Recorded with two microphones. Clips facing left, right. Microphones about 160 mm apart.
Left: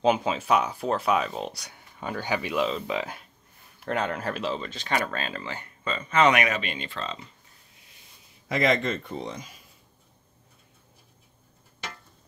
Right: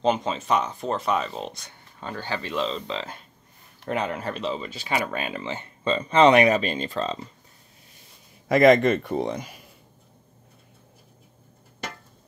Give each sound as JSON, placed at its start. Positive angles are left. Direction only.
{"t": 0.0, "sound": "speech", "side_deg": 5}
{"t": 3.9, "sound": "speech", "side_deg": 0}
{"t": 8.5, "sound": "a man's voice", "side_deg": -55}